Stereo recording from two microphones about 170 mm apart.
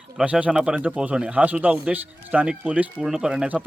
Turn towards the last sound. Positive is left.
turn(degrees=-5)  # may be behind; listen again after turning